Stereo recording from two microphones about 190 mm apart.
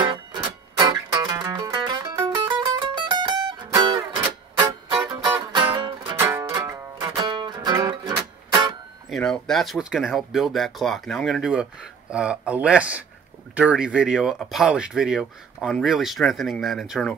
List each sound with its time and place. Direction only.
0.0 s music: 25° right (ahead or behind)
6.1 s music: 15° right (ahead or behind)
9.1 s speech: centre (ahead or behind)